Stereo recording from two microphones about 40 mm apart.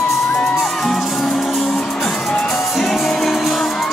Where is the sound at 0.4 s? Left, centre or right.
Centre.